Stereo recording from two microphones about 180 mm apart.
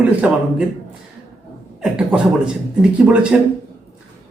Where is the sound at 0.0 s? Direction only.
5° right (ahead or behind).